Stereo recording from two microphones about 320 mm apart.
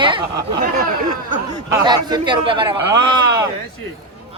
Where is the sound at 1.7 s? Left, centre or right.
Centre.